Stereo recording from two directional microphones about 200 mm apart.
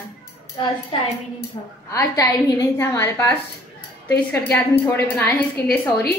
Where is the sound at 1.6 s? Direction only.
25° left (ahead or behind).